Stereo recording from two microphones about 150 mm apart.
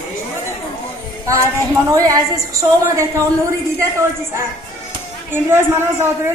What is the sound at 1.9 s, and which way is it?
A woman's voice, 25° right (ahead or behind).